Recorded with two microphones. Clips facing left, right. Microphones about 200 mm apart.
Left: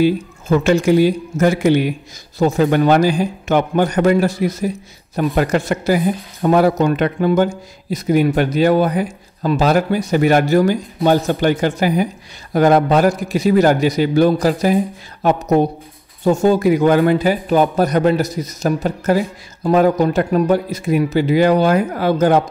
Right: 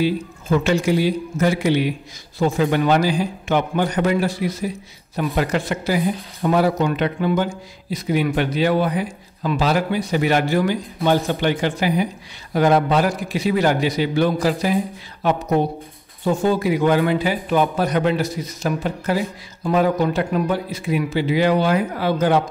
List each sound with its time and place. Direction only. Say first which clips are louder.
0.0 s a man's voice: left 5 dB; 50° left (ahead or behind)